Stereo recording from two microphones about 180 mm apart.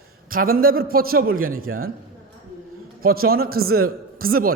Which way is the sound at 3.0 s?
55° right (ahead or behind).